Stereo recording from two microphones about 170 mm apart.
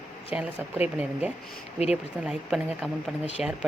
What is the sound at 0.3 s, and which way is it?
A woman's voice, 10° right (ahead or behind).